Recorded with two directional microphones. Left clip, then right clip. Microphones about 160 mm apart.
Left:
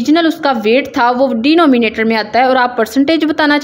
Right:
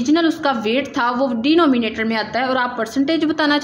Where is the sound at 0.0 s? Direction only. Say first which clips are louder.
Left 5 dB; 35° left (ahead or behind).